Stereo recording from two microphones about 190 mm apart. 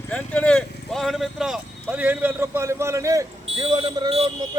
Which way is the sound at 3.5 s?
30° right (ahead or behind).